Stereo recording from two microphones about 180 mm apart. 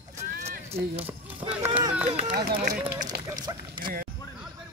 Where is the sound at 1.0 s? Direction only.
10° right (ahead or behind).